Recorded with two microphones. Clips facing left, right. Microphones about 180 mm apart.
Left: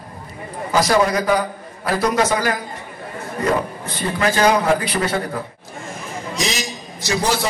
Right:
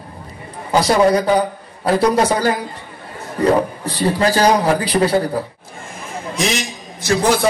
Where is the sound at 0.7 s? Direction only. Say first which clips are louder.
Right 3 dB; 30° right (ahead or behind).